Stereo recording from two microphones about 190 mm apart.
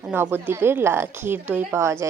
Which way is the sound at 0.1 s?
10° right (ahead or behind).